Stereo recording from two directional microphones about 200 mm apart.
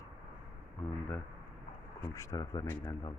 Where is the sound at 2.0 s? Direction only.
15° left (ahead or behind).